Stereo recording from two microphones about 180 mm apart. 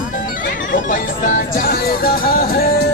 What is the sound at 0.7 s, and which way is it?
Speech, 50° left (ahead or behind).